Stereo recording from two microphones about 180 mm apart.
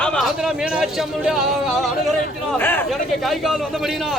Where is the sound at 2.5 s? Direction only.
10° left (ahead or behind).